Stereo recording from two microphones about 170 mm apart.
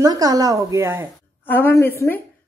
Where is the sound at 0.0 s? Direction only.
20° right (ahead or behind).